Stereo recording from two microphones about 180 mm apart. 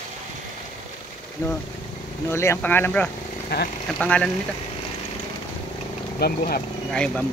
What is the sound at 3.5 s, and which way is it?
Speech, 60° left (ahead or behind).